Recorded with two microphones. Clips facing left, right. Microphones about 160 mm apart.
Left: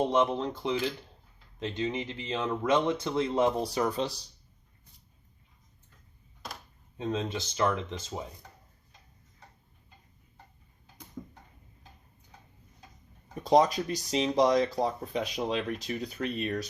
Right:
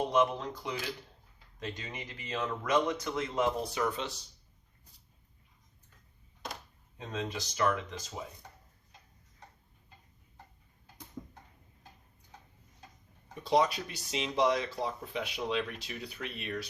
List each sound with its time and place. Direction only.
0.1 s speech: 25° left (ahead or behind)
6.9 s speech: 25° left (ahead or behind)
13.4 s speech: 40° left (ahead or behind)